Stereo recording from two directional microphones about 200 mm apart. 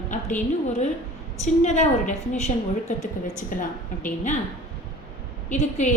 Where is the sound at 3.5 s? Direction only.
40° left (ahead or behind).